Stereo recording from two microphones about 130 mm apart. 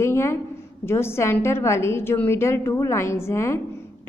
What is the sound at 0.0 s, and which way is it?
A woman's voice, 20° left (ahead or behind).